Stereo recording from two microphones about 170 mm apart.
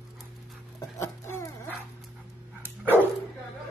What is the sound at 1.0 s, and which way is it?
Chicken, 15° left (ahead or behind).